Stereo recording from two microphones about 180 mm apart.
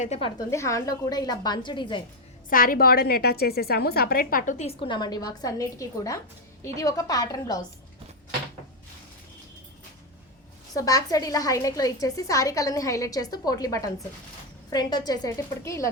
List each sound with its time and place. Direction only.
0.0 s a woman's voice: 35° left (ahead or behind)
0.5 s a woman's voice: 15° left (ahead or behind)
2.5 s a woman's voice: 50° left (ahead or behind)
4.8 s a woman's voice: 25° left (ahead or behind)
10.8 s a woman's voice: 20° left (ahead or behind)